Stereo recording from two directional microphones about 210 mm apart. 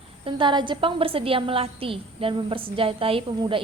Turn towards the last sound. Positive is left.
turn(degrees=-25)  # may be behind; listen again after turning